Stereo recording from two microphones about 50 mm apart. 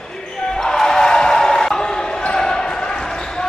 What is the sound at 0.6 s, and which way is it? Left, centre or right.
Basketball bounce, centre.